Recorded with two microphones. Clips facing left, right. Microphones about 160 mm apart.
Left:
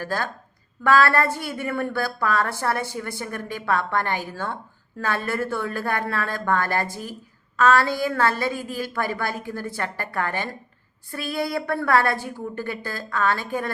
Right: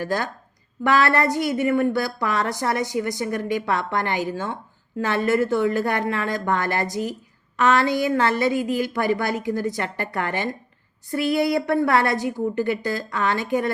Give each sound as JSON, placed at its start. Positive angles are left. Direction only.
{"t": 0.0, "sound": "a woman's voice", "side_deg": -15}